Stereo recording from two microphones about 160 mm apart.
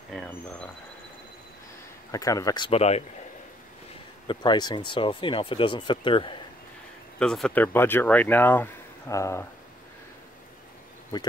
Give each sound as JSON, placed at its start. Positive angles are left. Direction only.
{"t": 0.1, "sound": "speech", "side_deg": 5}
{"t": 2.0, "sound": "speech", "side_deg": 20}
{"t": 4.3, "sound": "speech", "side_deg": 25}
{"t": 7.2, "sound": "speech", "side_deg": 5}
{"t": 11.1, "sound": "speech", "side_deg": 25}